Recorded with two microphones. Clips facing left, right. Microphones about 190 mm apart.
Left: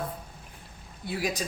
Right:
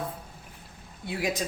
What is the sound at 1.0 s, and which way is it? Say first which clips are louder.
Speech: right 1 dB; 20° right (ahead or behind).